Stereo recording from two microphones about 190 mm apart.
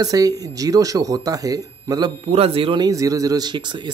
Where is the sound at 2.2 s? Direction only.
30° right (ahead or behind).